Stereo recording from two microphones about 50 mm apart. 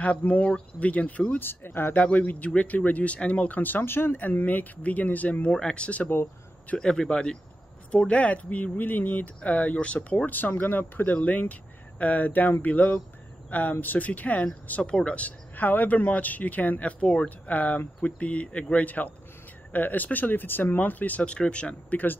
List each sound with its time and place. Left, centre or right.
0.0 s speech: left
1.4 s speech: left
2.0 s speech: left
4.2 s speech: left
14.8 s speech: centre
21.9 s speech: left